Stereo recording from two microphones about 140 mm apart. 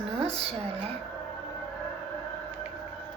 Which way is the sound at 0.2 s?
45° right (ahead or behind).